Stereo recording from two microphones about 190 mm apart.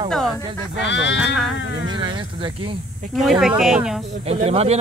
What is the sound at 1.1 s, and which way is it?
Speech, centre (ahead or behind).